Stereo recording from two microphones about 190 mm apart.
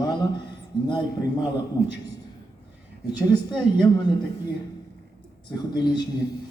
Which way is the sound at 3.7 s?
20° left (ahead or behind).